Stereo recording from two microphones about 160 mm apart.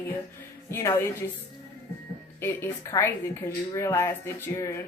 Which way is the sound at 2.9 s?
15° left (ahead or behind).